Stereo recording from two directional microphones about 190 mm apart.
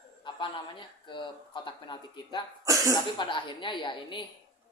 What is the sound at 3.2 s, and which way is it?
A woman's voice, 25° left (ahead or behind).